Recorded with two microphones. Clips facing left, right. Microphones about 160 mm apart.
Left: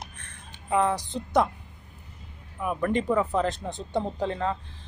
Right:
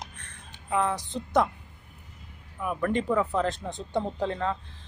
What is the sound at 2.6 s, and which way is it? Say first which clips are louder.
Speech: left 1 dB; 15° left (ahead or behind).